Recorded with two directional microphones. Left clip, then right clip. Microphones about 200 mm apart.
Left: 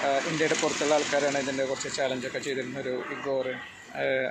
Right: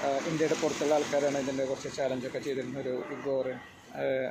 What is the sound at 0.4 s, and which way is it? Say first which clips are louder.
Speech: left 3 dB; 5° left (ahead or behind).